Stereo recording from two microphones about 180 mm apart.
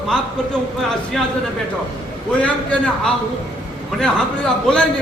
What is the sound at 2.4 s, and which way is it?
Speech, 5° left (ahead or behind).